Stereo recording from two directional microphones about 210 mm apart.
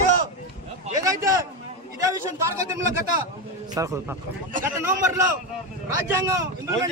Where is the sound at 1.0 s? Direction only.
15° right (ahead or behind).